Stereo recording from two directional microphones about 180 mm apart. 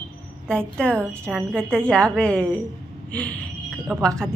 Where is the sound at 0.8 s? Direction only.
5° left (ahead or behind).